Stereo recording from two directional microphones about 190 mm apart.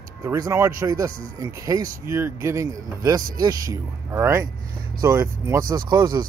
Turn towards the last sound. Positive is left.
turn(degrees=-20)  # may be behind; listen again after turning